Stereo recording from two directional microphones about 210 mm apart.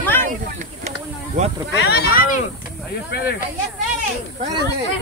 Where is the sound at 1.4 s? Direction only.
35° right (ahead or behind).